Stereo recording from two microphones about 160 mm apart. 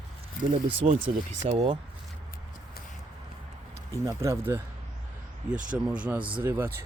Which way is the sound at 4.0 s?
20° right (ahead or behind).